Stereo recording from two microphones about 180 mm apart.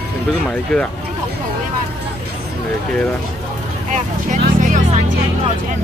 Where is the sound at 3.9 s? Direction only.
45° right (ahead or behind).